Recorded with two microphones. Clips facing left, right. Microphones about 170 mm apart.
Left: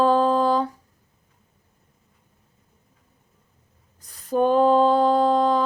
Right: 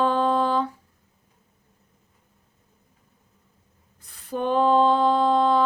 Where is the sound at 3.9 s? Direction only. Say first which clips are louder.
Left 7 dB; 40° left (ahead or behind).